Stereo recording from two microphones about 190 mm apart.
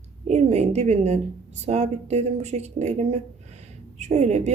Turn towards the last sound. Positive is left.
turn(degrees=-35)  # may be behind; listen again after turning